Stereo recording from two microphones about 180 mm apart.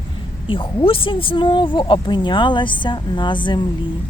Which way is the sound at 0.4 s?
30° left (ahead or behind).